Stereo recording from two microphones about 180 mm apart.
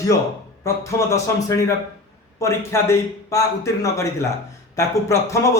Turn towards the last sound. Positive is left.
turn(degrees=15)  # may be behind; listen again after turning